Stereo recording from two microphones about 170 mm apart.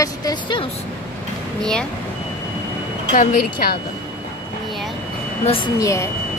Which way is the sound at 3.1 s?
60° left (ahead or behind).